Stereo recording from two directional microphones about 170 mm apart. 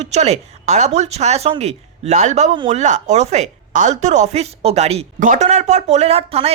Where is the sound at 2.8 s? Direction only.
45° right (ahead or behind).